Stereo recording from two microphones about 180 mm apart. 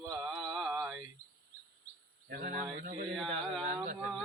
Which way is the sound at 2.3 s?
50° right (ahead or behind).